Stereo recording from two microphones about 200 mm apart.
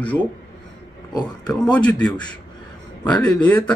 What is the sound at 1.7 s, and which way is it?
Speech, 5° left (ahead or behind).